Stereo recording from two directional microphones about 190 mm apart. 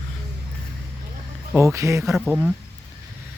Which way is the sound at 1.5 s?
15° right (ahead or behind).